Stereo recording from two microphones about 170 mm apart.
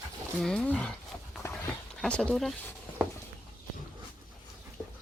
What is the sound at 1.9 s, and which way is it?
Speech, 5° left (ahead or behind).